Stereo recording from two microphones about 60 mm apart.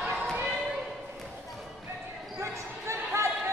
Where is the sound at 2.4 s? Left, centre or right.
Right.